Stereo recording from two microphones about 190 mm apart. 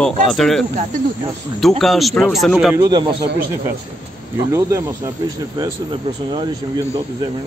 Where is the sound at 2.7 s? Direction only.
20° right (ahead or behind).